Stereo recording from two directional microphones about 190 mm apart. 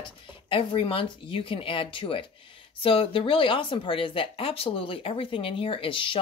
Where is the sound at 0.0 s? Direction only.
30° left (ahead or behind).